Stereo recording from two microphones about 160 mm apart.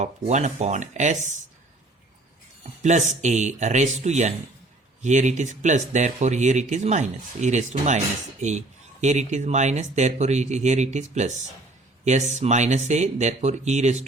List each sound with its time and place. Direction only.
0.0 s speech: 45° right (ahead or behind)
2.8 s speech: 45° right (ahead or behind)